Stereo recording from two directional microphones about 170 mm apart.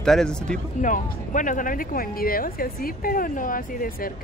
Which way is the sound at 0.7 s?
50° left (ahead or behind).